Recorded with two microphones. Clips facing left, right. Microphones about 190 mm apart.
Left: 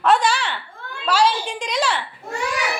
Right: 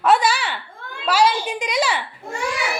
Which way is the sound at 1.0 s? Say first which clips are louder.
Right 1 dB; 10° right (ahead or behind).